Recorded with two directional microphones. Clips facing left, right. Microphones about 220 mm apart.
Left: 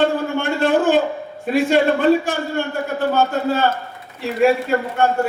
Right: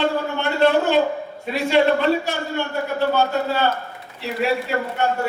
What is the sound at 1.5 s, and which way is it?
A man's voice, 50° left (ahead or behind).